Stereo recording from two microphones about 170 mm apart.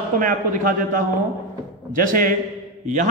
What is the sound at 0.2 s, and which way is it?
A man's voice, 55° right (ahead or behind).